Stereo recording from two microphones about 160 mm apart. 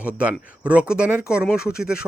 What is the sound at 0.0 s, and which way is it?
A man's voice, 10° right (ahead or behind).